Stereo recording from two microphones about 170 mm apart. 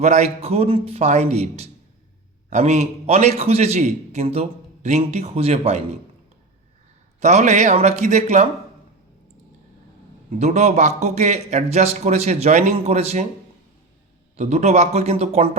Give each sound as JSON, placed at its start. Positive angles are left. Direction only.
{"t": 0.0, "sound": "a man's voice", "side_deg": -40}
{"t": 7.2, "sound": "a man's voice", "side_deg": -45}
{"t": 10.3, "sound": "a man's voice", "side_deg": -40}
{"t": 14.3, "sound": "a man's voice", "side_deg": -40}